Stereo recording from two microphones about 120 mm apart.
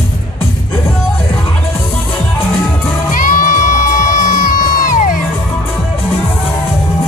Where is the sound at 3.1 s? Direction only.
90° left.